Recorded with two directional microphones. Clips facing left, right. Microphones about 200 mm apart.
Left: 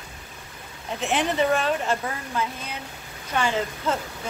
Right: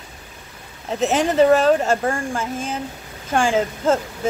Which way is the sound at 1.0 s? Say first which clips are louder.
Right 7 dB; 40° right (ahead or behind).